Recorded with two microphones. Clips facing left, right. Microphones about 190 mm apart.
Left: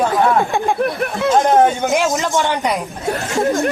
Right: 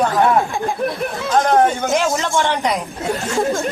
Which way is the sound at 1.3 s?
20° left (ahead or behind).